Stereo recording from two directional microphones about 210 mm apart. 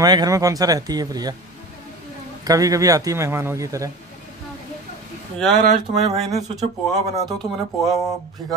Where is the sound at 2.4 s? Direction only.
15° right (ahead or behind).